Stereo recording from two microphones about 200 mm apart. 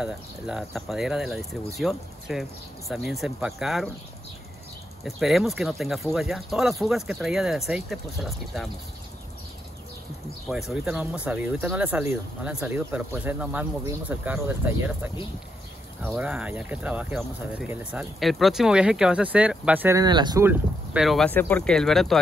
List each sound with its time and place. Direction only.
0.0 s speech: 5° right (ahead or behind)
5.0 s speech: centre (ahead or behind)
10.5 s speech: 5° right (ahead or behind)
16.1 s speech: 5° right (ahead or behind)